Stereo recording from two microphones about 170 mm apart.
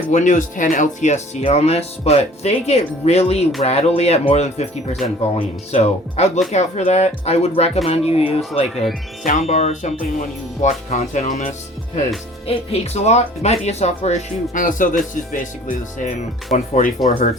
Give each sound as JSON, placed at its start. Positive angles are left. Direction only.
{"t": 0.1, "sound": "speech", "side_deg": 45}
{"t": 9.2, "sound": "speech", "side_deg": 40}